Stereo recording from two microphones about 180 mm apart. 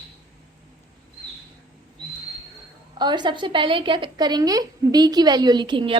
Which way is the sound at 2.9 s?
25° right (ahead or behind).